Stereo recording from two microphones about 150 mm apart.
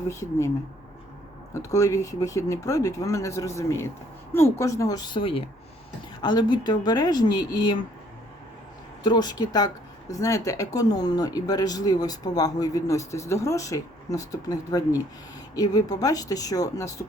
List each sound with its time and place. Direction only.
0.1 s speech: 20° left (ahead or behind)
1.5 s speech: 20° left (ahead or behind)
9.0 s speech: 30° left (ahead or behind)